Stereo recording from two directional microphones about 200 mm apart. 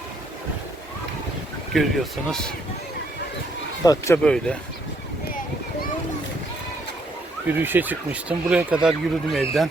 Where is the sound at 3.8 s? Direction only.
15° left (ahead or behind).